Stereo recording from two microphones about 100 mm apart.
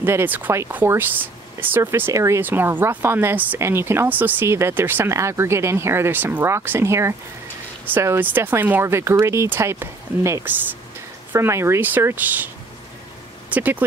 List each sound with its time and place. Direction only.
0.0 s speech: 20° right (ahead or behind)
13.5 s speech: 15° right (ahead or behind)